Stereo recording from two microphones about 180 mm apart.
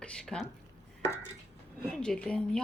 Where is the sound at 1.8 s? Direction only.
5° left (ahead or behind).